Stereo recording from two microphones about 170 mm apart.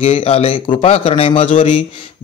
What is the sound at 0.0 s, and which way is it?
Speech, 35° left (ahead or behind).